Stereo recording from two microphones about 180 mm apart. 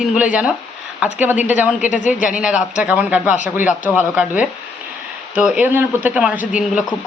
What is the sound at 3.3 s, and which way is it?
Speech, 45° left (ahead or behind).